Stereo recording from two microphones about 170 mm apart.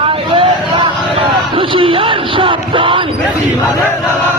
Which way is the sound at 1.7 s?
30° right (ahead or behind).